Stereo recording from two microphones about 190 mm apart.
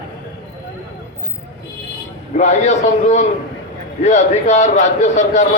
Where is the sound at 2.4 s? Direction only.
40° left (ahead or behind).